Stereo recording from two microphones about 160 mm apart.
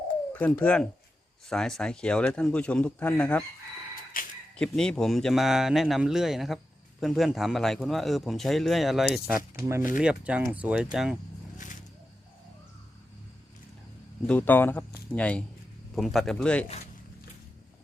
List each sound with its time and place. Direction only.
0.6 s a man's voice: 5° left (ahead or behind)
4.1 s a sound: 60° left (ahead or behind)
4.5 s a man's voice: 5° left (ahead or behind)
9.3 s speech: 60° left (ahead or behind)
9.6 s a man's voice: 15° right (ahead or behind)
14.3 s a man's voice: 10° left (ahead or behind)